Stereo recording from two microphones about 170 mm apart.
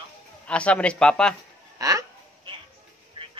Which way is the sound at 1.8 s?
20° right (ahead or behind).